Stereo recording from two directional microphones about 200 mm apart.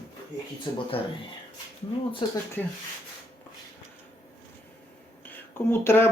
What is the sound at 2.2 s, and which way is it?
Speech, 25° left (ahead or behind).